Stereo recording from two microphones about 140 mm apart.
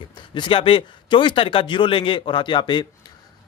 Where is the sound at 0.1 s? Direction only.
35° left (ahead or behind).